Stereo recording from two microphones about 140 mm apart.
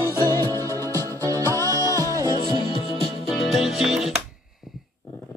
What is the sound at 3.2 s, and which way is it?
Music, centre (ahead or behind).